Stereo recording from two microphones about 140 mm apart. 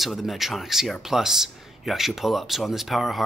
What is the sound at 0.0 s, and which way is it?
Speech, centre (ahead or behind).